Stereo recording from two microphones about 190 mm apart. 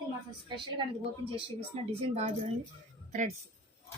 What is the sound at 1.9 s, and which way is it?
A woman's voice, 35° right (ahead or behind).